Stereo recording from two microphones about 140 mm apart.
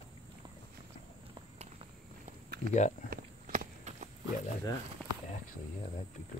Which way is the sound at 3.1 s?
80° right.